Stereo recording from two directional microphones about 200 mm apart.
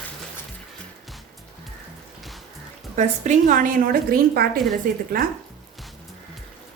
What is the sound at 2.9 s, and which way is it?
A woman's voice, 35° right (ahead or behind).